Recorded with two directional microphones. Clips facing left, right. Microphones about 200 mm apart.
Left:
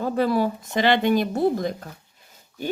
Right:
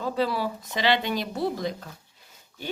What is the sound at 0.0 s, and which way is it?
Speech, 50° left (ahead or behind).